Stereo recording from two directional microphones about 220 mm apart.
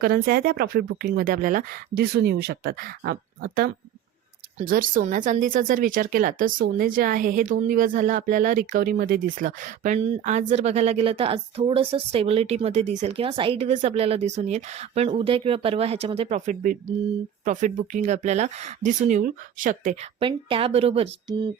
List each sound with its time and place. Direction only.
0.0 s speech: 45° right (ahead or behind); by 21.5 s 25° right (ahead or behind)